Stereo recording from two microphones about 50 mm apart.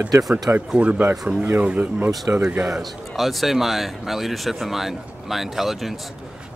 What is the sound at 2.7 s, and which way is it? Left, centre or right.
Speech, centre.